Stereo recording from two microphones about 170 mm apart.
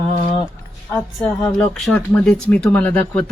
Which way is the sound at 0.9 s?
5° left (ahead or behind).